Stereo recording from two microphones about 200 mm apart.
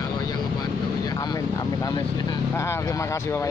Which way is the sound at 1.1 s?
20° left (ahead or behind).